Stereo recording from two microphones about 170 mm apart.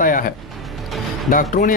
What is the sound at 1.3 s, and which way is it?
Speech, 55° left (ahead or behind).